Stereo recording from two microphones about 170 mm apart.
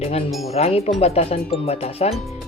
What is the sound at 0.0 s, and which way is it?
Speech, 35° left (ahead or behind).